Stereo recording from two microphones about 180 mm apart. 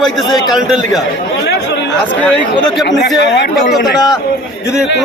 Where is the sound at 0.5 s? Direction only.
Centre (ahead or behind).